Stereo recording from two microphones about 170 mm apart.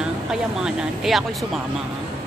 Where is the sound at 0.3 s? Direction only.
5° right (ahead or behind).